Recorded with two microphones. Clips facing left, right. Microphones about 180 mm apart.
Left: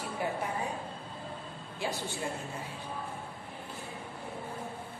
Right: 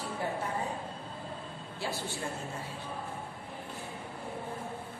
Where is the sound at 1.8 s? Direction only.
15° left (ahead or behind).